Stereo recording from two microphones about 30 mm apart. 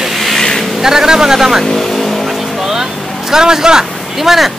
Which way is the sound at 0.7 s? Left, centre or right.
Centre.